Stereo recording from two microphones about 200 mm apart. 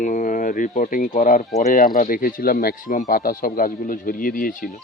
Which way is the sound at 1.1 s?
40° left (ahead or behind).